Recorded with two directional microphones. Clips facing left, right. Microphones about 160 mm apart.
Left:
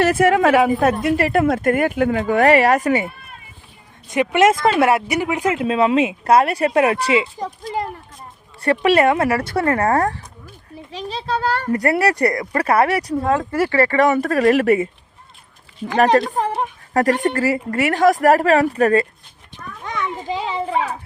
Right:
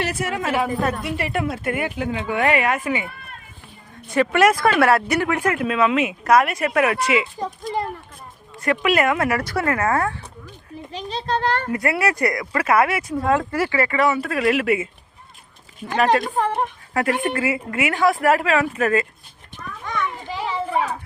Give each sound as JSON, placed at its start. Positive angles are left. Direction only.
{"t": 0.0, "sound": "a woman's voice", "side_deg": 55}
{"t": 0.3, "sound": "a woman's voice", "side_deg": 85}
{"t": 1.1, "sound": "speech", "side_deg": 40}
{"t": 4.1, "sound": "speech", "side_deg": 20}
{"t": 8.6, "sound": "a woman's voice", "side_deg": 30}
{"t": 10.9, "sound": "a woman's voice", "side_deg": 5}
{"t": 11.7, "sound": "a woman's voice", "side_deg": 35}
{"t": 13.2, "sound": "speech", "side_deg": 20}
{"t": 13.7, "sound": "a woman's voice", "side_deg": 40}
{"t": 16.1, "sound": "a woman's voice", "side_deg": 40}
{"t": 20.2, "sound": "children playing", "side_deg": 20}